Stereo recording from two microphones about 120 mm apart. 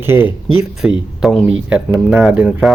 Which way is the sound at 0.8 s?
5° right (ahead or behind).